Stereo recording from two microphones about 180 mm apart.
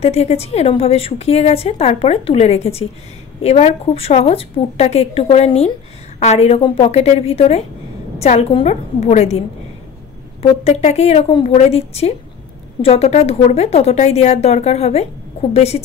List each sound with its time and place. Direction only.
0.0 s a woman's voice: 35° left (ahead or behind)
10.4 s a woman's voice: 35° left (ahead or behind)